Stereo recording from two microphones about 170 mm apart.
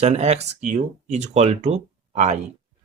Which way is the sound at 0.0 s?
40° right (ahead or behind).